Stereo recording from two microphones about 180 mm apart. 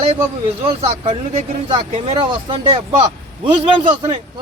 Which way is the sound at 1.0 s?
35° right (ahead or behind).